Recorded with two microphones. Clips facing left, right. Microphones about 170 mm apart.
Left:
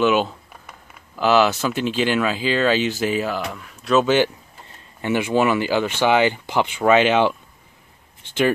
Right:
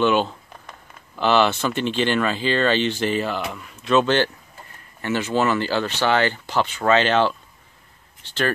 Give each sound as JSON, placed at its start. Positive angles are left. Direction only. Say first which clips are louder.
{"t": 0.0, "sound": "speech", "louder": "left 1 dB", "side_deg": 5}